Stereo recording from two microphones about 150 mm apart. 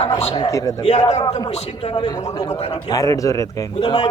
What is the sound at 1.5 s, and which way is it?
Speech, 45° left (ahead or behind).